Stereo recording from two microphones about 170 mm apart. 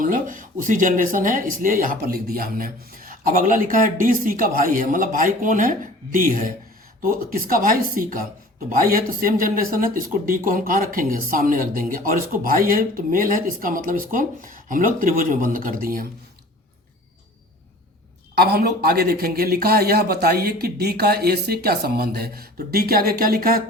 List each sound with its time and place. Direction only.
0.0 s speech: 50° right (ahead or behind)
18.3 s speech: 65° right (ahead or behind)